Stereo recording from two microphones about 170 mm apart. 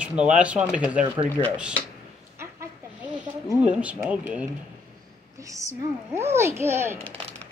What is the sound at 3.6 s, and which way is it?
Speech, 5° right (ahead or behind).